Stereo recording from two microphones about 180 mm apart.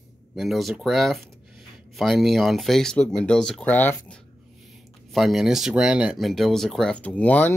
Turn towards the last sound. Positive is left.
turn(degrees=5)  # may be behind; listen again after turning